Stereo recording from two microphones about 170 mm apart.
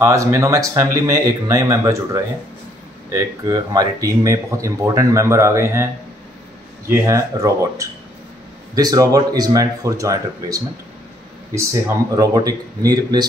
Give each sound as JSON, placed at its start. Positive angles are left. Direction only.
{"t": 0.0, "sound": "speech", "side_deg": -15}
{"t": 7.1, "sound": "speech", "side_deg": -20}
{"t": 12.2, "sound": "speech", "side_deg": -20}